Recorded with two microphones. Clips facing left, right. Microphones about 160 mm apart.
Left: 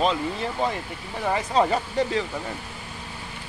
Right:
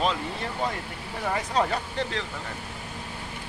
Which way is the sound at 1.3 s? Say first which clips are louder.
Left 4 dB; 5° left (ahead or behind).